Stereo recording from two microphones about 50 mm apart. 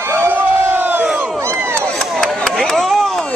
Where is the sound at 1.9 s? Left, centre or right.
Centre.